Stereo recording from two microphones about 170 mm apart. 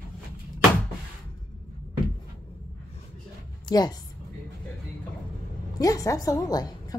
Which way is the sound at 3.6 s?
25° left (ahead or behind).